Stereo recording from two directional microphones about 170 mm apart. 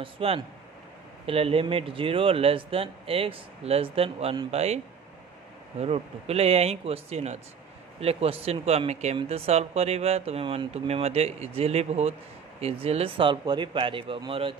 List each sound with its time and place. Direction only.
0.0 s speech: 35° right (ahead or behind)
5.8 s speech: 35° right (ahead or behind)